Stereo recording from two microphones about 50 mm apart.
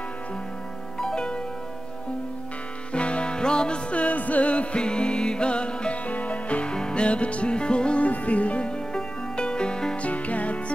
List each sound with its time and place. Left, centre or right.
0.9 s music: centre
2.9 s music: left
10.0 s music: left